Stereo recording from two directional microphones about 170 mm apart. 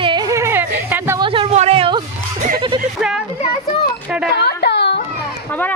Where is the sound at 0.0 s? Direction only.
25° right (ahead or behind).